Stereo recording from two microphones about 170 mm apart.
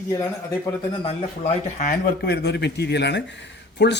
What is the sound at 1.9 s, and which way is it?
Speech, 70° left (ahead or behind).